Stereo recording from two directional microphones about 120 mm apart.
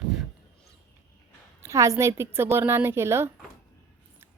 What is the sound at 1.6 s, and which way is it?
A woman's voice, 25° right (ahead or behind).